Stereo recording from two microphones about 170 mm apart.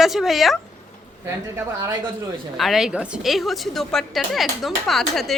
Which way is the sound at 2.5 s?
Centre (ahead or behind).